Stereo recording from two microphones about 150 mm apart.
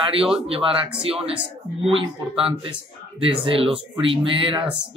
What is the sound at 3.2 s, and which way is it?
Speech, 35° right (ahead or behind).